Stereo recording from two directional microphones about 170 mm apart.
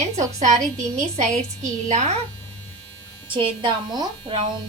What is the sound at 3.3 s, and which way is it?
Speech, 30° right (ahead or behind).